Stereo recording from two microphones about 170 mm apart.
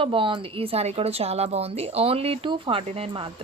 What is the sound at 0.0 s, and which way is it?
A woman's voice, 30° right (ahead or behind).